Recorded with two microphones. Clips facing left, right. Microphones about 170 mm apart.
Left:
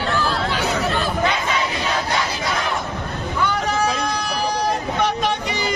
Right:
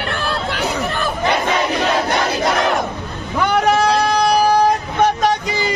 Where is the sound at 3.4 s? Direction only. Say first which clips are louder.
Right 6 dB; 70° right (ahead or behind).